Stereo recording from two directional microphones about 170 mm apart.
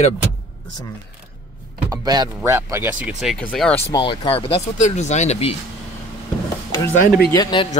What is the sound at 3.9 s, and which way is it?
Speech, 30° left (ahead or behind).